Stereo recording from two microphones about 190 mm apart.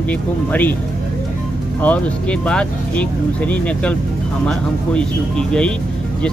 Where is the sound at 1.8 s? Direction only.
5° left (ahead or behind).